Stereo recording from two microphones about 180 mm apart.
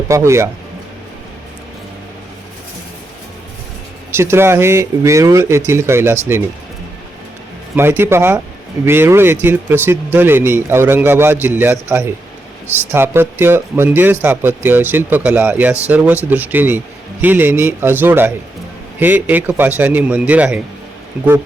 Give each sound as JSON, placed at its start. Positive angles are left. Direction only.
{"t": 0.1, "sound": "speech", "side_deg": -15}
{"t": 4.1, "sound": "speech", "side_deg": -15}
{"t": 7.8, "sound": "speech", "side_deg": -15}